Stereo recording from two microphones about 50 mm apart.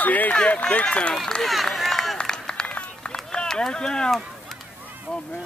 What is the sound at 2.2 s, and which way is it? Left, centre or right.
Run, centre.